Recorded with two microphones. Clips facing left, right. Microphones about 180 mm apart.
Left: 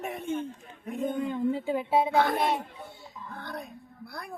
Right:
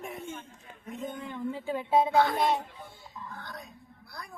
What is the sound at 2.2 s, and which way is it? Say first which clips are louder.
A man's voice: even; 55° left (ahead or behind).